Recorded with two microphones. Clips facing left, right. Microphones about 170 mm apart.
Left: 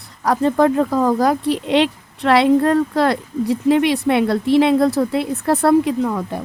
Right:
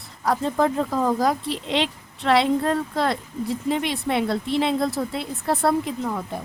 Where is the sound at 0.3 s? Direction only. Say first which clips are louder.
Left 6 dB; 70° left (ahead or behind).